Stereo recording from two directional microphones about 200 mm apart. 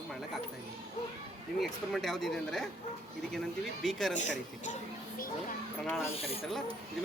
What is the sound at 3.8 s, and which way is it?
Speech, centre (ahead or behind).